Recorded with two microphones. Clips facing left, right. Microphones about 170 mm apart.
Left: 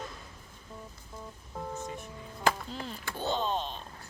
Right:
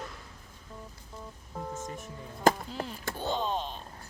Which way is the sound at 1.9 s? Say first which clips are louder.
Right 1 dB; 45° right (ahead or behind).